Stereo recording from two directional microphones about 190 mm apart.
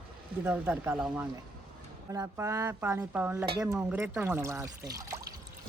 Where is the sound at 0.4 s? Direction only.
5° right (ahead or behind).